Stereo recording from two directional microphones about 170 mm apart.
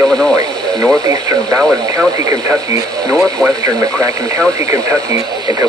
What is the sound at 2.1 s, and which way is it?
Speech, 20° right (ahead or behind).